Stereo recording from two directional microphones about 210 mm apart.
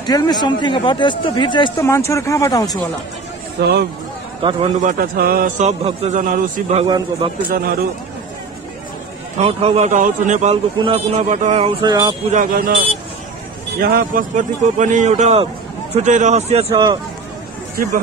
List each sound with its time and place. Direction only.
0.0 s speech: 20° left (ahead or behind)
3.5 s speech: 50° right (ahead or behind)
4.4 s a man's voice: 25° right (ahead or behind)
4.9 s a man's voice: 45° right (ahead or behind); by 7.2 s 25° right (ahead or behind)
9.4 s a man's voice: 30° right (ahead or behind)
11.8 s a man's voice: 20° right (ahead or behind)
12.4 s a man's voice: 40° right (ahead or behind); by 17.0 s 20° right (ahead or behind)